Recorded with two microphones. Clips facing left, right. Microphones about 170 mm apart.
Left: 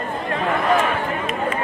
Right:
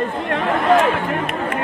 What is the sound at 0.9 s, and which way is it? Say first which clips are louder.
Chatter: right 3 dB; 60° right (ahead or behind).